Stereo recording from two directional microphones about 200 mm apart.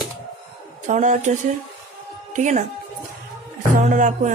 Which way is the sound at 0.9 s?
40° right (ahead or behind).